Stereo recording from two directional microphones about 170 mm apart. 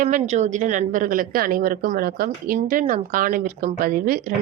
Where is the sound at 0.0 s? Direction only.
45° right (ahead or behind).